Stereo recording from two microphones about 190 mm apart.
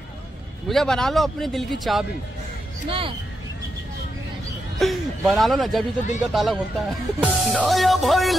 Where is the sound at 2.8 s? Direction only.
30° right (ahead or behind).